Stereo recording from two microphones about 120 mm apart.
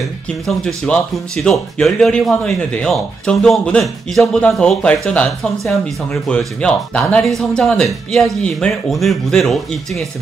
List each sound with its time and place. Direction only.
0.3 s speech: 5° left (ahead or behind)